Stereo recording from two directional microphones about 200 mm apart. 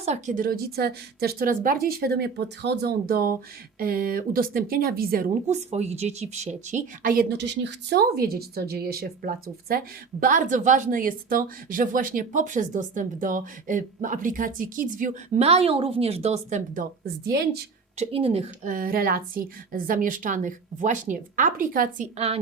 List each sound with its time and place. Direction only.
0.0 s a woman's voice: 35° right (ahead or behind)
17.9 s speech: 30° right (ahead or behind)